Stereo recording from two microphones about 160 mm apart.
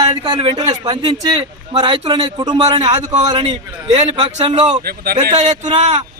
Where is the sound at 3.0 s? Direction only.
45° right (ahead or behind).